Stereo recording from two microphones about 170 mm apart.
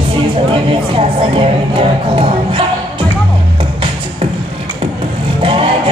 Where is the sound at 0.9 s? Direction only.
30° right (ahead or behind).